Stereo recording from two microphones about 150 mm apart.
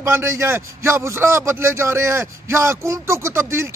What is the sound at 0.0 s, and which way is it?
A man's voice, 15° right (ahead or behind).